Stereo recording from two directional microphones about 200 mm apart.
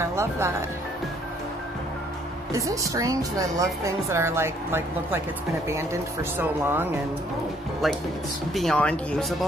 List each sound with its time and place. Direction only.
0.0 s a woman's voice: 15° right (ahead or behind)
2.5 s a woman's voice: 15° right (ahead or behind)
6.3 s a woman's voice: 10° right (ahead or behind)
7.8 s speech: centre (ahead or behind)